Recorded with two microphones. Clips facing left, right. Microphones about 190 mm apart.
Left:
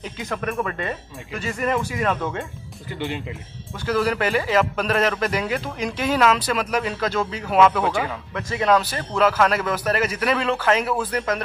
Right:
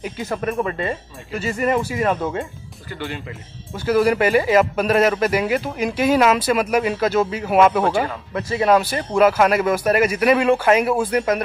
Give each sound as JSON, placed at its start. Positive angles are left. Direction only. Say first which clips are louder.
{"t": 0.0, "sound": "speech", "louder": "right 4 dB", "side_deg": -10}
{"t": 0.7, "sound": "speech", "louder": "right 4 dB", "side_deg": -35}
{"t": 1.4, "sound": "speech", "louder": "right 4 dB", "side_deg": -10}
{"t": 2.9, "sound": "speech", "louder": "left 1 dB", "side_deg": 15}
{"t": 3.7, "sound": "speech", "louder": "right 5 dB", "side_deg": -10}